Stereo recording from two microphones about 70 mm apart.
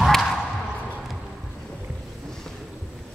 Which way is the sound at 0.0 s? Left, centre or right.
Centre.